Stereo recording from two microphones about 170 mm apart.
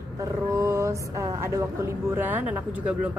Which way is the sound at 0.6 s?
20° right (ahead or behind).